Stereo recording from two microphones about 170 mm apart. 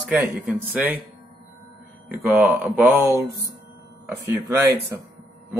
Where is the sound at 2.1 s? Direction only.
10° right (ahead or behind).